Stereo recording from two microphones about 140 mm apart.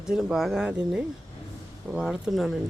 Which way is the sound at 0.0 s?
5° right (ahead or behind).